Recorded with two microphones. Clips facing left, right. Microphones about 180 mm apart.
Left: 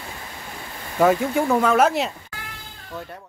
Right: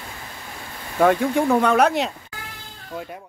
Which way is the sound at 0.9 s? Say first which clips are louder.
Right 1 dB; centre (ahead or behind).